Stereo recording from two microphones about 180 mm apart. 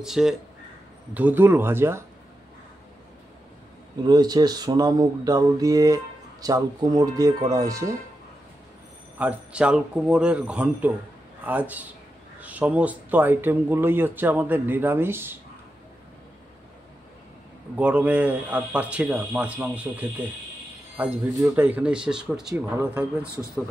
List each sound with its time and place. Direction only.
0.0 s speech: centre (ahead or behind)
4.0 s speech: 25° right (ahead or behind)
9.2 s speech: 5° right (ahead or behind)
17.7 s speech: 10° right (ahead or behind)